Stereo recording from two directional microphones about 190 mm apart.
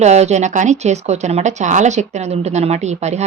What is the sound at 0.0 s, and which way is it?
Speech, 35° right (ahead or behind).